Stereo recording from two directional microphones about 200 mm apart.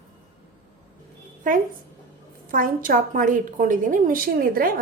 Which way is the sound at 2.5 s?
45° right (ahead or behind).